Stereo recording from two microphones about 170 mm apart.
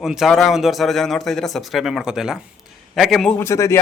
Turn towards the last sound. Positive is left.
turn(degrees=15)  # may be behind; listen again after turning